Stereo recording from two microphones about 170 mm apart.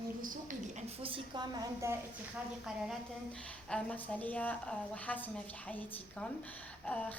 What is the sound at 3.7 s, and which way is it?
A woman's voice, 10° left (ahead or behind).